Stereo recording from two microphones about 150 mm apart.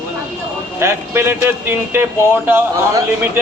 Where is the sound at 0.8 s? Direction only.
15° right (ahead or behind).